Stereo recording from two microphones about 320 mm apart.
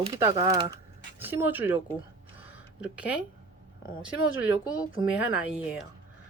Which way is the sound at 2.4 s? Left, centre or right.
Centre.